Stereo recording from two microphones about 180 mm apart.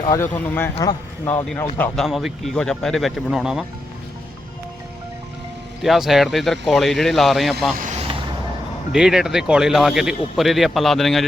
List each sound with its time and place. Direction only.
0.0 s speech: 20° left (ahead or behind)
0.8 s speech: 20° left (ahead or behind)
1.8 s speech: centre (ahead or behind)
5.8 s speech: centre (ahead or behind)
7.8 s vehicle: 40° right (ahead or behind)
8.9 s speech: 5° right (ahead or behind)